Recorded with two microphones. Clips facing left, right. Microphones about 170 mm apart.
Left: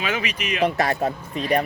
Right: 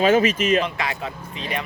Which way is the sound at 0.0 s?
45° right (ahead or behind).